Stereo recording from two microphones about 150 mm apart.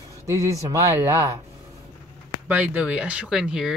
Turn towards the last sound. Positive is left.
turn(degrees=-5)  # may be behind; listen again after turning